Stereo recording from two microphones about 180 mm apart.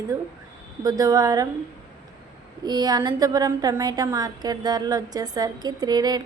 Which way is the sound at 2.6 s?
20° right (ahead or behind).